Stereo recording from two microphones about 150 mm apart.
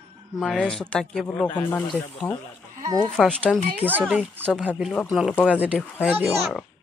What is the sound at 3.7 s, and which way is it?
Speech, 10° right (ahead or behind).